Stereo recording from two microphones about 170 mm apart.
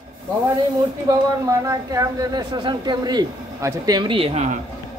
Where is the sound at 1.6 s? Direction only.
20° right (ahead or behind).